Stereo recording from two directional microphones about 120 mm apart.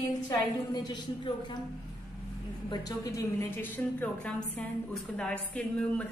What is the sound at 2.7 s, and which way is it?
Speech, 30° left (ahead or behind).